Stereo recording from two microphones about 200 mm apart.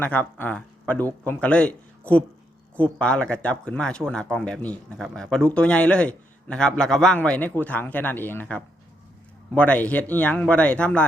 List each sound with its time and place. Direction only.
0.0 s speech: 10° left (ahead or behind)